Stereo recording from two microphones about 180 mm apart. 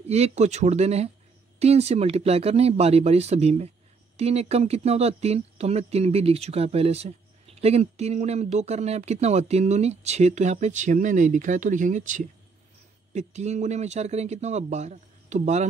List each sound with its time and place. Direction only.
0.0 s speech: 35° right (ahead or behind)